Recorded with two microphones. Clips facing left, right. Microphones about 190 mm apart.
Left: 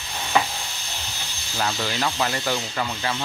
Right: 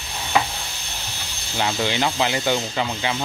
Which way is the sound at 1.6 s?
25° right (ahead or behind).